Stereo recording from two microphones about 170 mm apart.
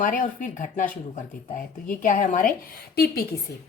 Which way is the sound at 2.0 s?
50° left (ahead or behind).